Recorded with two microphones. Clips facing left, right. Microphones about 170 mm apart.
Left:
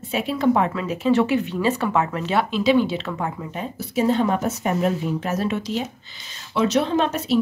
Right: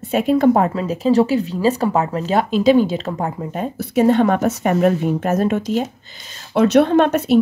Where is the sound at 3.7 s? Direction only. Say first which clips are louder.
Right 6 dB; 60° right (ahead or behind).